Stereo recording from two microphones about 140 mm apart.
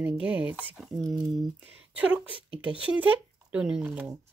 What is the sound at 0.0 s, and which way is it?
Speech, 10° right (ahead or behind).